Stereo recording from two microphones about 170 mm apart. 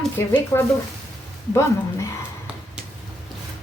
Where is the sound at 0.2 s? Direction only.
15° left (ahead or behind).